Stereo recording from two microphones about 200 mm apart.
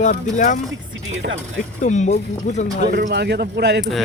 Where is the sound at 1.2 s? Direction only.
55° right (ahead or behind).